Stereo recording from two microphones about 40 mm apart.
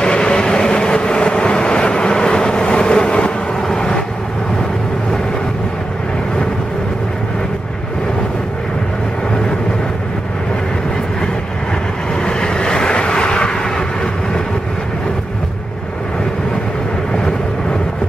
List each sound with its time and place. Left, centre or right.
0.0 s vehicle: left
12.2 s vehicle: centre